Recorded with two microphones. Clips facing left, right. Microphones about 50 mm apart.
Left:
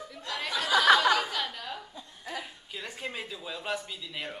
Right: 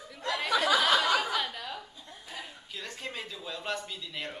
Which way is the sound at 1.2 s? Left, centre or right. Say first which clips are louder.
Right 1 dB; centre.